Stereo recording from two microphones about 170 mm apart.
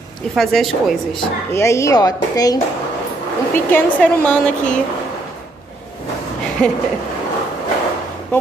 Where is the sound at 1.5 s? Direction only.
15° left (ahead or behind).